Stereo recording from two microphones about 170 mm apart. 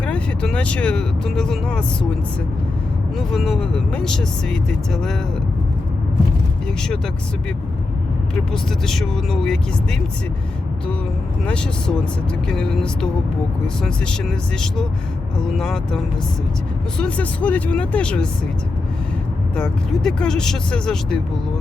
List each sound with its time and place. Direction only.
0.0 s speech: 5° left (ahead or behind)
3.2 s speech: centre (ahead or behind)
8.5 s speech: centre (ahead or behind)
11.4 s speech: 5° left (ahead or behind)
19.5 s speech: 5° left (ahead or behind)